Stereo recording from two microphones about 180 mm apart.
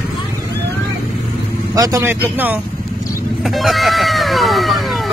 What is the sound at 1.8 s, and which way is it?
Speech, 15° right (ahead or behind).